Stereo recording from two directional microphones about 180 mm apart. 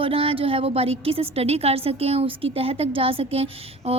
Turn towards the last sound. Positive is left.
turn(degrees=-35)  # may be behind; listen again after turning